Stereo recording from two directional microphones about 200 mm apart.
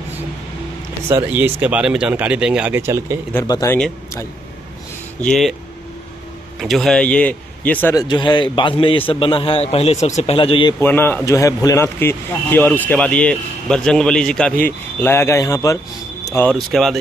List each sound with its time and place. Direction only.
1.0 s speech: 10° right (ahead or behind)
3.3 s a man's voice: 15° left (ahead or behind)
6.6 s speech: centre (ahead or behind)
7.9 s a man's voice: 20° left (ahead or behind)
10.8 s a man's voice: 10° left (ahead or behind)
16.3 s a man's voice: 5° left (ahead or behind)